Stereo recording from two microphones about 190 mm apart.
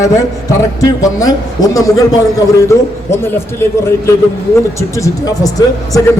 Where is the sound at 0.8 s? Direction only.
20° left (ahead or behind).